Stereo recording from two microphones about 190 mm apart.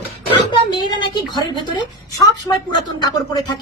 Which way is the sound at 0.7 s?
25° left (ahead or behind).